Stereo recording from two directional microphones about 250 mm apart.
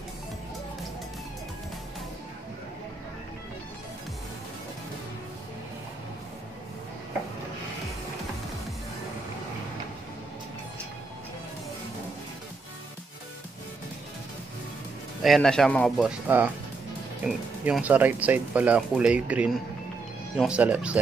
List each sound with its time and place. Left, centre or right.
15.2 s speech: centre